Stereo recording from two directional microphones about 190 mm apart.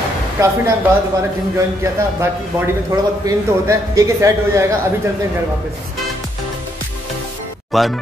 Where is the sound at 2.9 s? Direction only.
15° right (ahead or behind).